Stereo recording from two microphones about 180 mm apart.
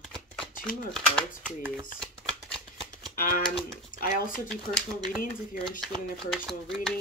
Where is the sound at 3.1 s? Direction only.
50° left (ahead or behind).